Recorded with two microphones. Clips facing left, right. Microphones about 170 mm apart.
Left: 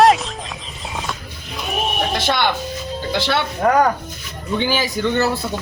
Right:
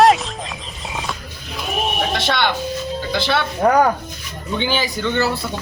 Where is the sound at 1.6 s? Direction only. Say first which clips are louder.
Even; centre (ahead or behind).